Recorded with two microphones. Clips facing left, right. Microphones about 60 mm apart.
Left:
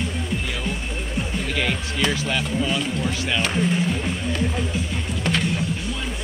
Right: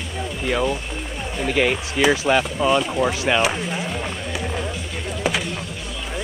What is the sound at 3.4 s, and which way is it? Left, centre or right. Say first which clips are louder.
Speech: left 1 dB; centre.